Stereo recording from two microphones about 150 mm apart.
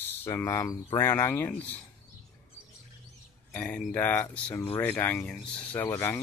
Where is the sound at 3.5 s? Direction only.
10° left (ahead or behind).